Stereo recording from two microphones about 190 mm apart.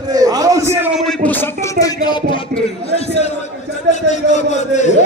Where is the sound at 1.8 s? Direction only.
20° left (ahead or behind).